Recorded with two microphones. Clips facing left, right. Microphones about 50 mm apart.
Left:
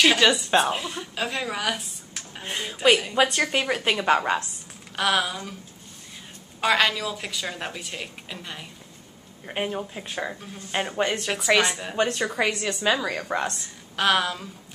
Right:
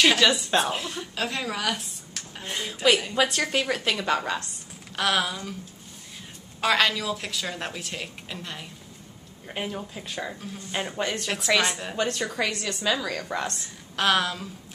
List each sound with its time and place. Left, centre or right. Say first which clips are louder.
0.0 s a woman's voice: left 1 dB; centre; by 4.5 s left
4.9 s a woman's voice: left 1 dB; centre
6.6 s a woman's voice: left 1 dB; centre
9.5 s a woman's voice: left 4 dB; centre
11.0 s a woman's voice: left 4 dB; centre
12.8 s speech: left 3 dB; left
13.5 s a woman's voice: left 1 dB; centre